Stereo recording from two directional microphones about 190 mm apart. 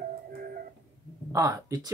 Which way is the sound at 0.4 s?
50° right (ahead or behind).